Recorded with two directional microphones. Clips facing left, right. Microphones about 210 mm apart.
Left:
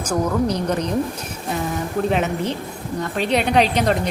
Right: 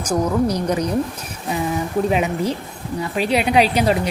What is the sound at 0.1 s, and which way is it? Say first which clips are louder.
Speech: right 2 dB; 10° right (ahead or behind).